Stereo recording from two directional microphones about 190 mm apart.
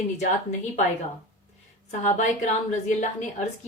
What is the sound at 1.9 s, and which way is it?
Speech, 35° left (ahead or behind).